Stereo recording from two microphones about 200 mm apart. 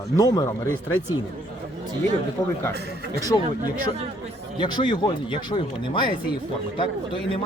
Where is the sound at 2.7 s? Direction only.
55° right (ahead or behind).